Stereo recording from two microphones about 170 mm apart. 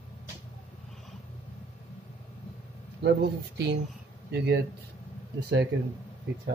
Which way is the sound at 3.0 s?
80° right.